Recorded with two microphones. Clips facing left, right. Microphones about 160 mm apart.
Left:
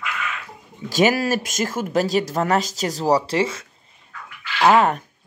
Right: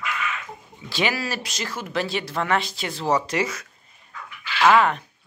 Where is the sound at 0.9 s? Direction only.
45° left (ahead or behind); by 3.7 s 25° left (ahead or behind).